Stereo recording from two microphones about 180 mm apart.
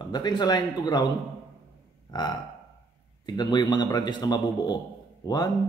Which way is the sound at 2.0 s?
25° left (ahead or behind).